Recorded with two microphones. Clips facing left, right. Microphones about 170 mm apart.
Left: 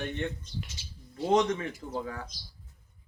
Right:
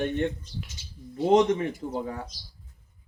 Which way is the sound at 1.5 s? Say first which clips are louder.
Right 6 dB; 25° right (ahead or behind).